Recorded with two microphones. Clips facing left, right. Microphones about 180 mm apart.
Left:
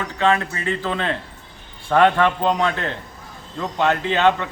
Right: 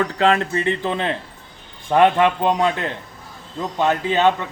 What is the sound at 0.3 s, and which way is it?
Speech, 25° right (ahead or behind).